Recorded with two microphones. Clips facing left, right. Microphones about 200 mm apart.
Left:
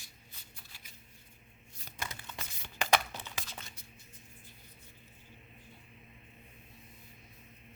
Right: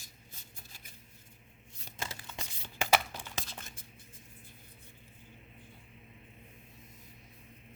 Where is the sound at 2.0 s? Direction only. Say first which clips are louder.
Right 1 dB; 25° right (ahead or behind).